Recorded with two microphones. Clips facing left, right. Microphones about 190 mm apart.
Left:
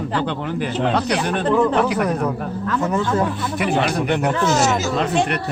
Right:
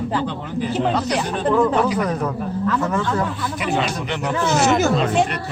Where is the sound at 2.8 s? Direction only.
20° left (ahead or behind).